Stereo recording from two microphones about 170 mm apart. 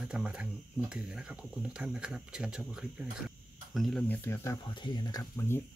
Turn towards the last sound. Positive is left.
turn(degrees=15)  # may be behind; listen again after turning